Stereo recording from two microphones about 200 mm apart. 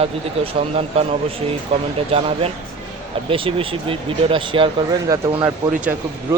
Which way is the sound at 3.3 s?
25° right (ahead or behind).